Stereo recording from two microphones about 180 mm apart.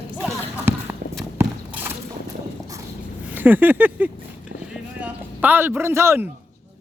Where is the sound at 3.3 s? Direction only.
10° right (ahead or behind).